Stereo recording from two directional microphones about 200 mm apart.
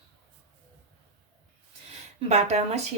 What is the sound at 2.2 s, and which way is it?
Speech, 35° right (ahead or behind).